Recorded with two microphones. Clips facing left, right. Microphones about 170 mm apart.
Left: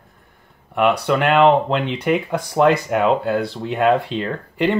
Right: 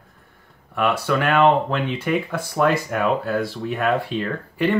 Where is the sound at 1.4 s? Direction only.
20° left (ahead or behind).